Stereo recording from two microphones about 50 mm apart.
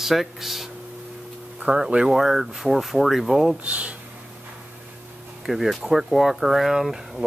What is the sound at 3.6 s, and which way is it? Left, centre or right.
Speech, right.